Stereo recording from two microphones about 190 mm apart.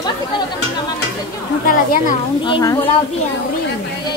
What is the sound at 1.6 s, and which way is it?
Speech, 50° left (ahead or behind).